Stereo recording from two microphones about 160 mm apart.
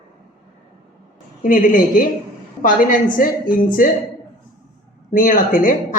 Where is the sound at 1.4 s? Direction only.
55° left (ahead or behind).